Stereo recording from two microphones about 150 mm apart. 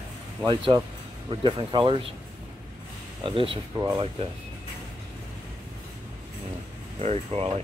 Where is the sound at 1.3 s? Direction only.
35° right (ahead or behind).